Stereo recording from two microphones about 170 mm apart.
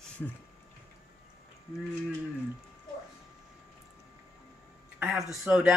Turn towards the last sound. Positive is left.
turn(degrees=-5)  # may be behind; listen again after turning